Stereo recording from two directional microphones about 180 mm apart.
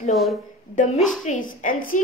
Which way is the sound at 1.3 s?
45° left (ahead or behind).